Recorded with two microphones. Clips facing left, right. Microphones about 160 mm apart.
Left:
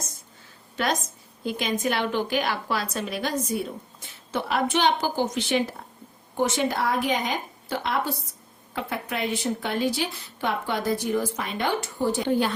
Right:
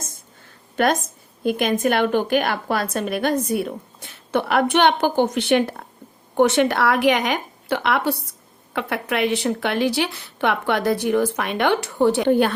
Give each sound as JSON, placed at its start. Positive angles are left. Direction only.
{"t": 0.8, "sound": "a woman's voice", "side_deg": -55}